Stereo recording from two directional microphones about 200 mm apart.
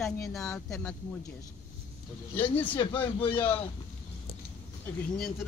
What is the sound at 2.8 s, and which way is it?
Speech, 25° left (ahead or behind).